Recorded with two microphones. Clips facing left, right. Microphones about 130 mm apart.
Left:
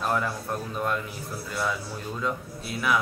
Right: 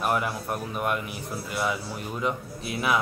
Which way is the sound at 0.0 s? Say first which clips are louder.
Right 1 dB; 15° right (ahead or behind).